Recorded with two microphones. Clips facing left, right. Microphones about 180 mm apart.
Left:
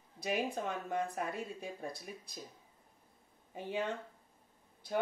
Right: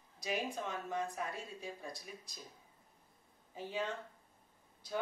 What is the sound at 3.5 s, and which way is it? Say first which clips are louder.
Speech: left 3 dB; 55° left (ahead or behind).